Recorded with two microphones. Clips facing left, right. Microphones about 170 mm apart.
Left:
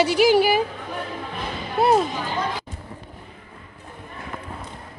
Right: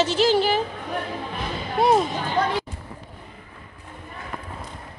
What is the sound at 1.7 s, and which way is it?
Speech, 5° left (ahead or behind).